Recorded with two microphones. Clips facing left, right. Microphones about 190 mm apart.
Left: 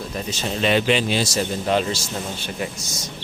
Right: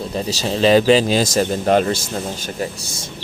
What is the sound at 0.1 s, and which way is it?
Speech, 35° right (ahead or behind).